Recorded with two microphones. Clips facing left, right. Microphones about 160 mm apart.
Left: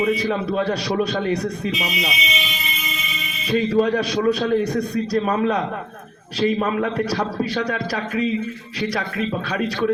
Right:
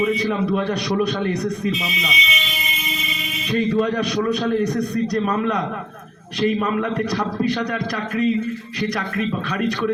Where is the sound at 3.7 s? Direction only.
30° left (ahead or behind).